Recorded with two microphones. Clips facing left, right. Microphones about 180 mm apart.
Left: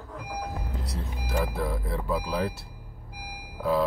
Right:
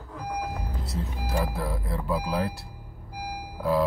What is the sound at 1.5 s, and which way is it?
Speech, centre (ahead or behind).